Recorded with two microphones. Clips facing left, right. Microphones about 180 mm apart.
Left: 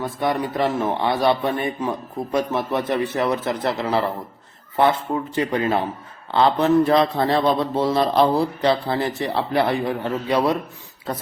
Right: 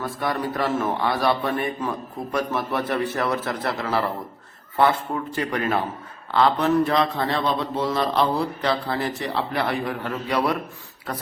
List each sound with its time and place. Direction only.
0.0 s a man's voice: 20° left (ahead or behind)